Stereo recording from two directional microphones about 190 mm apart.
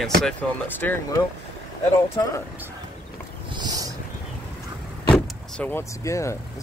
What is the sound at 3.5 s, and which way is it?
Boat, 20° right (ahead or behind).